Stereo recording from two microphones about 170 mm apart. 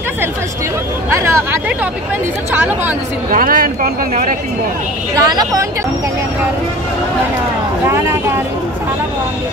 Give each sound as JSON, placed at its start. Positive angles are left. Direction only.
{"t": 1.1, "sound": "speech", "side_deg": -15}
{"t": 3.3, "sound": "speech", "side_deg": -55}
{"t": 5.1, "sound": "speech", "side_deg": -20}